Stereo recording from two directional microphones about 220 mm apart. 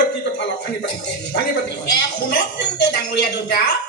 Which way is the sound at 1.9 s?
50° left (ahead or behind).